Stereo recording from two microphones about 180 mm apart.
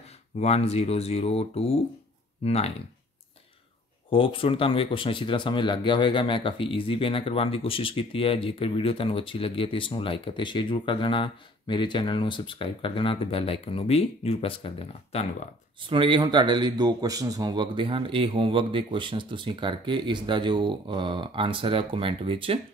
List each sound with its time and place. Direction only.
0.4 s speech: 35° left (ahead or behind)
4.1 s speech: 30° left (ahead or behind)
15.8 s a man's voice: 30° right (ahead or behind)